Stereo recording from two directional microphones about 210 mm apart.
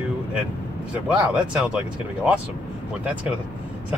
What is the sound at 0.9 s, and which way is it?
Speech, 5° right (ahead or behind).